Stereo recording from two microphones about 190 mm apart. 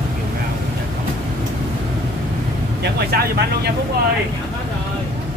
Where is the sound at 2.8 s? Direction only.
55° right (ahead or behind).